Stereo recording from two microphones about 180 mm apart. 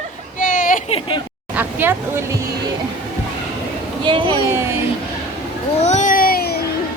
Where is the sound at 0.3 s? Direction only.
50° left (ahead or behind).